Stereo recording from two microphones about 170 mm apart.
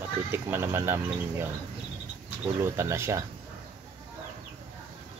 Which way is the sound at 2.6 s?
15° right (ahead or behind).